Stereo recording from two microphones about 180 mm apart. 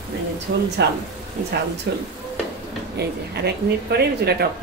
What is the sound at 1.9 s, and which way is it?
Speech, 70° right (ahead or behind).